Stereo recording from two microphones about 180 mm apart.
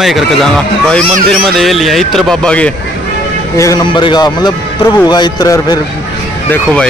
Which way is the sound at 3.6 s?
20° left (ahead or behind).